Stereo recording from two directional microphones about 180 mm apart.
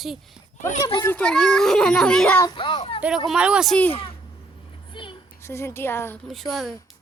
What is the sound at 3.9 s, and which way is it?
Speech, 30° left (ahead or behind).